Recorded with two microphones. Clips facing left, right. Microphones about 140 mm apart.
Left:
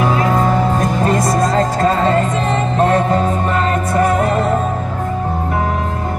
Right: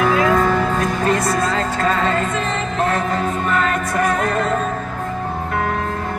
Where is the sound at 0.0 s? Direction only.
30° left (ahead or behind).